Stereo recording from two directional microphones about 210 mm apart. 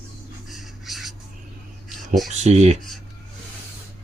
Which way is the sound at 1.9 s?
Centre (ahead or behind).